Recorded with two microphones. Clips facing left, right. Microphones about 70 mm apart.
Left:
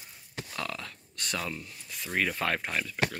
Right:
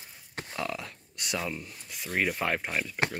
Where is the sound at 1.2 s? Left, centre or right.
Centre.